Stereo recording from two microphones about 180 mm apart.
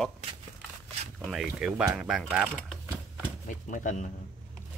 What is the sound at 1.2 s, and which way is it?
Speech, centre (ahead or behind).